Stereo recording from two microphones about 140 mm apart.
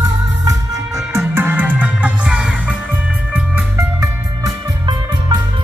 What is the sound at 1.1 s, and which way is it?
Music, 15° right (ahead or behind).